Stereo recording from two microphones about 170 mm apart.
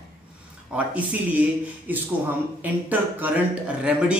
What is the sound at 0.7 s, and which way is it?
Speech, 5° right (ahead or behind).